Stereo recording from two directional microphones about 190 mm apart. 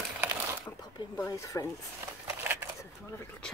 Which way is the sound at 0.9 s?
20° left (ahead or behind).